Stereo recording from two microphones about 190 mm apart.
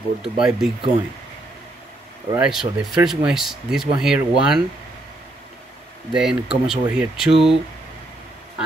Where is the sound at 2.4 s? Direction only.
5° right (ahead or behind).